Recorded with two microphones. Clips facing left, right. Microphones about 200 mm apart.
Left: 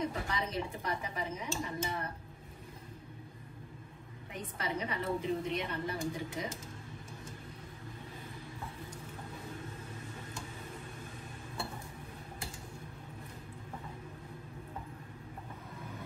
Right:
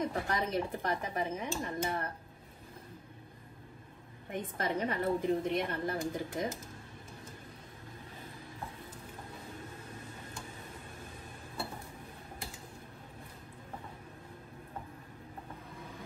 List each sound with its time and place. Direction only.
0.3 s a woman's voice: 55° right (ahead or behind)
4.3 s a woman's voice: 50° right (ahead or behind)